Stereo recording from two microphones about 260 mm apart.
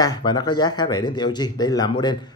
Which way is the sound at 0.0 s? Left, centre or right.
Centre.